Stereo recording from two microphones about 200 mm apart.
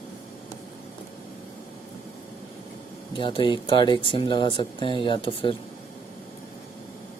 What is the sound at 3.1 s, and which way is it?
Speech, 25° left (ahead or behind).